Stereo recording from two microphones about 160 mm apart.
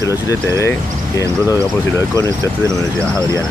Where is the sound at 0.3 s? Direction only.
20° left (ahead or behind).